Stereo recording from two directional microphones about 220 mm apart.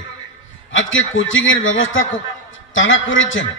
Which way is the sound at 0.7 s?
60° left (ahead or behind).